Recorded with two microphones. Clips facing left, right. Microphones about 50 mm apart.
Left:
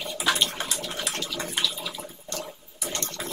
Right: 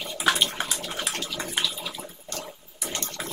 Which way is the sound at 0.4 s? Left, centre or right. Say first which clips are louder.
Right 1 dB; centre.